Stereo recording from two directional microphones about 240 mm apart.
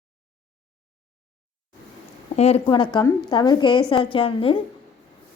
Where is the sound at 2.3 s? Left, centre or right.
Left.